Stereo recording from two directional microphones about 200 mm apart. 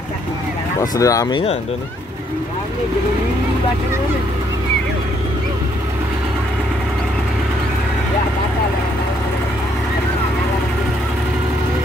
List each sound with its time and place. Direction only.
0.9 s speech: 15° left (ahead or behind)